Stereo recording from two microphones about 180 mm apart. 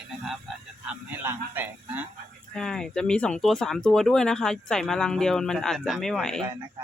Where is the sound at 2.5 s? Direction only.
5° left (ahead or behind).